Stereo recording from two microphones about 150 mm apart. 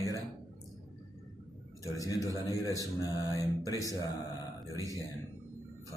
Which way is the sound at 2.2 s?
20° right (ahead or behind).